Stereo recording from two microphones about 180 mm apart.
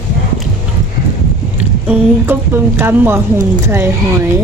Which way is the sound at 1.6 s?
10° right (ahead or behind).